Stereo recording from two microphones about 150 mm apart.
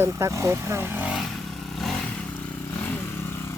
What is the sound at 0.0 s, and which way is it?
Speech, 20° right (ahead or behind).